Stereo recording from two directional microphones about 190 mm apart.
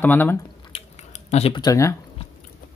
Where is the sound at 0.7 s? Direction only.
35° left (ahead or behind).